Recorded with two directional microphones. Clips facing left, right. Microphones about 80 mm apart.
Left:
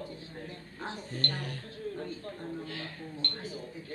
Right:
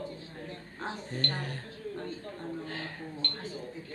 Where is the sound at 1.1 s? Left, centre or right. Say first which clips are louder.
Right 1 dB; right.